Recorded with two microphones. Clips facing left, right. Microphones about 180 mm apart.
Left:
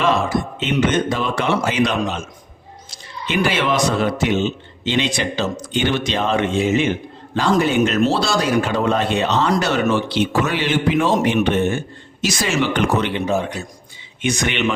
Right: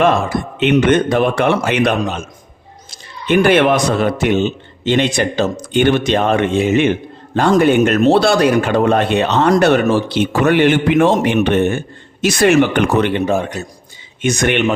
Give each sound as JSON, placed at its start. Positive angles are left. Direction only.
{"t": 0.0, "sound": "speech", "side_deg": -55}